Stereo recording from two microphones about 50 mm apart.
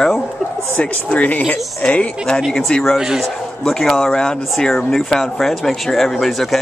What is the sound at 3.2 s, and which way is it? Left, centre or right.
Speech, centre.